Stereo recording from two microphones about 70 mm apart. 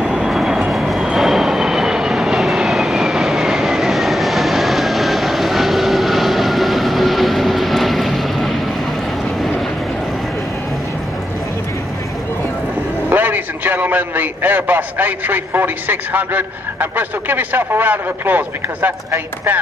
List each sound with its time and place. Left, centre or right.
0.0 s vehicle: centre
1.1 s train: centre
13.1 s a man's voice: right